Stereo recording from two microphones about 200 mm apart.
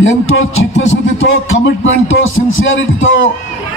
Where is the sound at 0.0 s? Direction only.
80° left.